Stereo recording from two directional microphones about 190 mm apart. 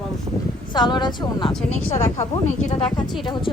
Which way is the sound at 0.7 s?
20° left (ahead or behind).